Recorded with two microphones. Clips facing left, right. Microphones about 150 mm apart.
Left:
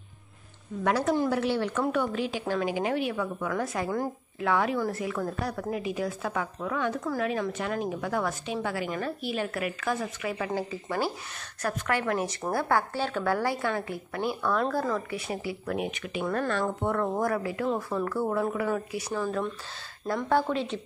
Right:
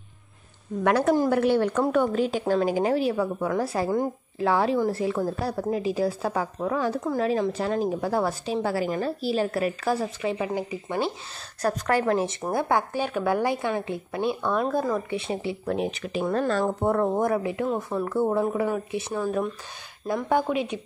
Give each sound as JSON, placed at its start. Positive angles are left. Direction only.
{"t": 0.8, "sound": "a woman's voice", "side_deg": -55}
{"t": 1.1, "sound": "a woman's voice", "side_deg": -45}
{"t": 11.6, "sound": "speech", "side_deg": -35}
{"t": 19.1, "sound": "speech", "side_deg": -10}